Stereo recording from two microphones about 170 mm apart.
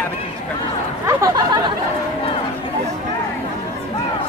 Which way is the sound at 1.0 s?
20° right (ahead or behind).